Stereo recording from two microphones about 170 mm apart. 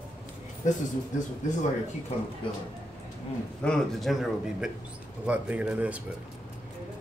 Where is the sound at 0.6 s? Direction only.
45° left (ahead or behind).